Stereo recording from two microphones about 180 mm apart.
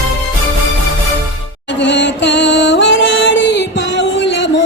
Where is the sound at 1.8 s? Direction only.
75° left (ahead or behind).